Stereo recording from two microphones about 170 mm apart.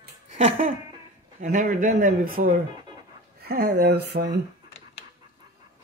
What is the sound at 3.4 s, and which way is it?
Speech, 70° right (ahead or behind).